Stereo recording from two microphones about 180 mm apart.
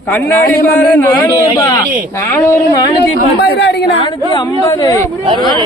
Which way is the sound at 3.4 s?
65° left (ahead or behind).